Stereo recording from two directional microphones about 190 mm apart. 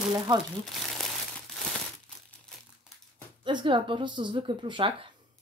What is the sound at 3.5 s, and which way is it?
Speech, 25° right (ahead or behind).